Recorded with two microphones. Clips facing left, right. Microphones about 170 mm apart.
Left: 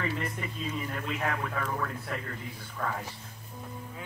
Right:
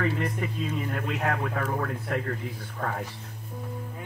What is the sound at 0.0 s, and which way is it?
Speech, 55° right (ahead or behind).